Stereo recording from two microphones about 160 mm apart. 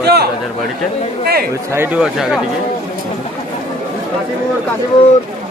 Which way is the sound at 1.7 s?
10° right (ahead or behind).